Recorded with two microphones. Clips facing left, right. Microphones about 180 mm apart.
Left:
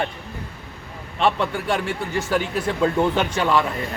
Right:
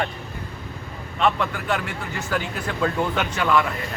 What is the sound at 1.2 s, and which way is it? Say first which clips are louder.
Speech: left 1 dB; 30° left (ahead or behind).